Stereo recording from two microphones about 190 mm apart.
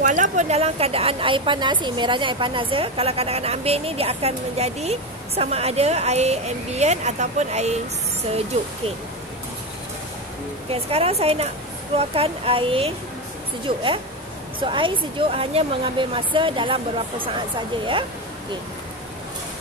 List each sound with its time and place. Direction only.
0.0 s a woman's voice: 40° right (ahead or behind)
10.7 s a woman's voice: 35° right (ahead or behind)